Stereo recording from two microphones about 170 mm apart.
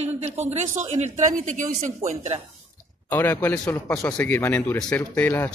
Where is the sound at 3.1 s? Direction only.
10° left (ahead or behind).